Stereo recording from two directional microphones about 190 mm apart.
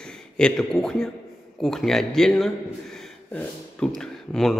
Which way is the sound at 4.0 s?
Centre (ahead or behind).